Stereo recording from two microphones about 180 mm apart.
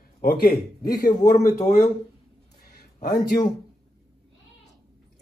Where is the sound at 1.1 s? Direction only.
40° left (ahead or behind).